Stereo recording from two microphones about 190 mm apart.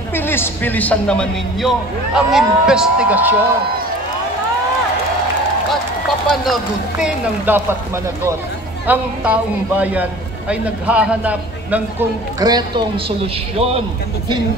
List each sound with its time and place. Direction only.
0.1 s a man's voice: 10° left (ahead or behind); by 3.3 s 10° right (ahead or behind)
6.3 s speech: centre (ahead or behind)
12.4 s a man's voice: 20° right (ahead or behind)